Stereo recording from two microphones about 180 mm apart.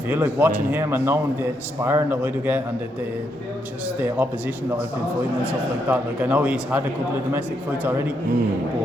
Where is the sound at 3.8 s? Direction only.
10° right (ahead or behind).